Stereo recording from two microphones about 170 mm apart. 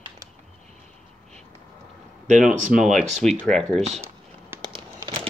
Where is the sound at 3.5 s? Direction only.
5° left (ahead or behind).